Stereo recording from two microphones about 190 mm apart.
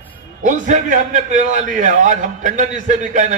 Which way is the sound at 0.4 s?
40° right (ahead or behind).